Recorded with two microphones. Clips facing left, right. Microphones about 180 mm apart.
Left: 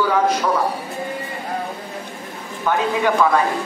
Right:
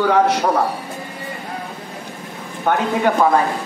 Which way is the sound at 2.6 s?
45° right (ahead or behind).